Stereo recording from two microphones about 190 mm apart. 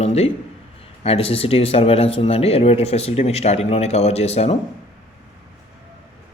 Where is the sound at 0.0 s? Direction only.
35° left (ahead or behind).